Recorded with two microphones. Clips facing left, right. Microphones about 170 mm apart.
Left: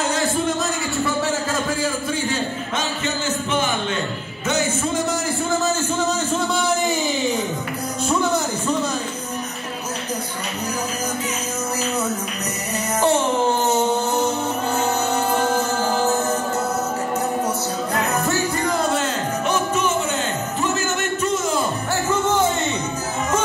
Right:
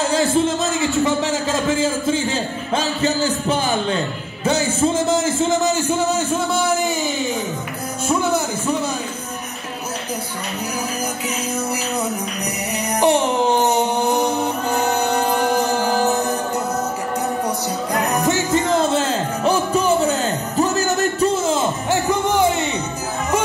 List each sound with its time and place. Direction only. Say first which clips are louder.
1.0 s a sound: right 3 dB; 20° right (ahead or behind); by 3.7 s 35° right (ahead or behind)
4.5 s music: right 4 dB; 30° right (ahead or behind)
5.1 s a man's voice: right 4 dB; 20° right (ahead or behind)
13.0 s music: right 2 dB; 15° right (ahead or behind)
17.9 s music: right 3 dB; 15° right (ahead or behind)
22.1 s music: right 1 dB; 15° right (ahead or behind)